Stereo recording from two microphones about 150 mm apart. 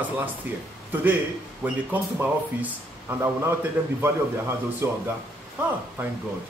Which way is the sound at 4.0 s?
15° right (ahead or behind).